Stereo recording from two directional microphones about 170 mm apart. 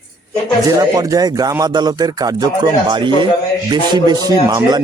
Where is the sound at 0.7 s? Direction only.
20° right (ahead or behind).